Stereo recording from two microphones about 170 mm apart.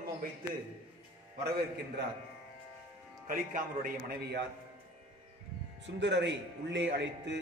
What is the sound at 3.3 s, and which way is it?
Speech, 55° right (ahead or behind).